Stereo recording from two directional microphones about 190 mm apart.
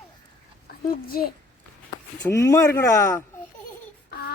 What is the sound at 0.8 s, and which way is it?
Speech, 50° left (ahead or behind).